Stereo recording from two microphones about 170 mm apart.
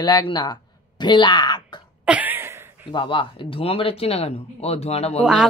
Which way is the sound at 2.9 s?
30° left (ahead or behind).